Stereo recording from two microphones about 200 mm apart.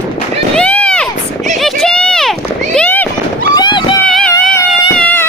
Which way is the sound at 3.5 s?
20° left (ahead or behind).